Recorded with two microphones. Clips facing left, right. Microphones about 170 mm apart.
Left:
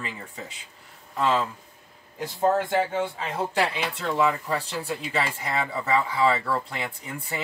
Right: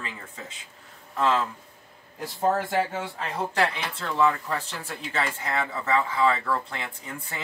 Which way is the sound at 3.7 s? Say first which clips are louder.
Left 3 dB; 15° left (ahead or behind).